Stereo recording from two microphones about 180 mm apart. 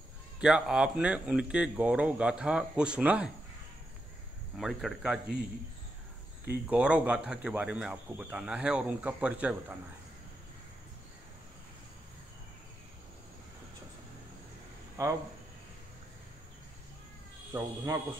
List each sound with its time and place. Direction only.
0.4 s speech: 5° right (ahead or behind)
4.6 s speech: centre (ahead or behind)
6.7 s speech: 5° right (ahead or behind)
15.0 s speech: 15° right (ahead or behind)
17.5 s speech: 15° right (ahead or behind)